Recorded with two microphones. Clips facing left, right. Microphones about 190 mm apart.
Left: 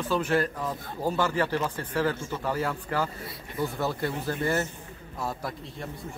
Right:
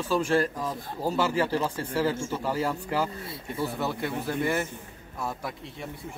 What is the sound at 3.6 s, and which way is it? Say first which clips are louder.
A man's voice: left 1 dB; centre (ahead or behind).